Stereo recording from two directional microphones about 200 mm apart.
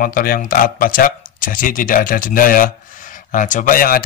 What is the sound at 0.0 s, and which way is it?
Speech, 45° left (ahead or behind).